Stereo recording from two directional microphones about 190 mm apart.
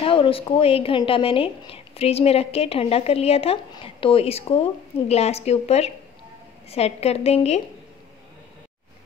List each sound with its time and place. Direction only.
0.0 s a woman's voice: 30° left (ahead or behind)